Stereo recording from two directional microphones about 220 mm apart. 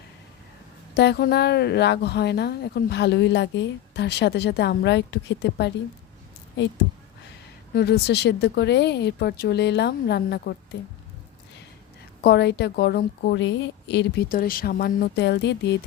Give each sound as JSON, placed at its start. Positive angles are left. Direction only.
{"t": 0.9, "sound": "speech", "side_deg": 50}
{"t": 7.7, "sound": "speech", "side_deg": 45}
{"t": 12.2, "sound": "speech", "side_deg": 50}